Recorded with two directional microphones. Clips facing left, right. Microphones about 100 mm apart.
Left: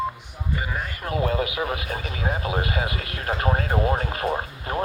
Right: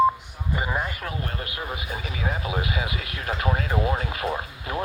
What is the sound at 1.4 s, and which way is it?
Speech, 85° left.